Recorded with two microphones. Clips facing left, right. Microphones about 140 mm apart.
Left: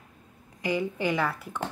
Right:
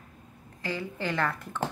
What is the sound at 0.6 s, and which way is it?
A woman's voice, 15° left (ahead or behind).